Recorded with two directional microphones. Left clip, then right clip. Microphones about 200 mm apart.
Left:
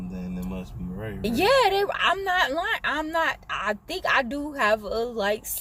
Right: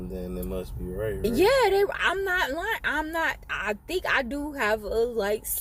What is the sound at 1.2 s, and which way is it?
Speech, 20° left (ahead or behind).